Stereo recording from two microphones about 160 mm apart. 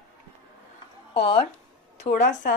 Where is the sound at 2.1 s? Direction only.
75° left (ahead or behind).